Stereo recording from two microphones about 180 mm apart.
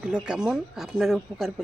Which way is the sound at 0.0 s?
5° right (ahead or behind).